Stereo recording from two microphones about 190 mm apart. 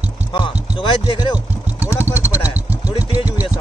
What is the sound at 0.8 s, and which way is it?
Speech, 25° left (ahead or behind).